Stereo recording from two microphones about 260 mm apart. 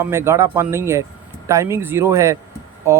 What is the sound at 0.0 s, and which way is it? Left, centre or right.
Speech, centre.